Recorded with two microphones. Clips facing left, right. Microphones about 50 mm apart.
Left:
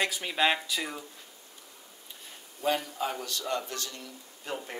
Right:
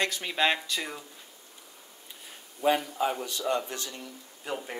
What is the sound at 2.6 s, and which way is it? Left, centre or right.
Speech, centre.